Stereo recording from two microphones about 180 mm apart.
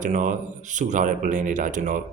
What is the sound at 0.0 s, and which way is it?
Speech, 45° right (ahead or behind).